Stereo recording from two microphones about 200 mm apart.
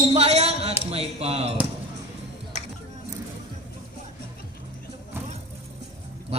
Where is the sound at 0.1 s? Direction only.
35° right (ahead or behind).